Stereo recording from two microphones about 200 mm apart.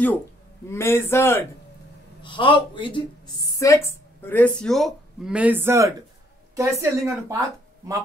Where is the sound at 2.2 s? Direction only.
25° left (ahead or behind).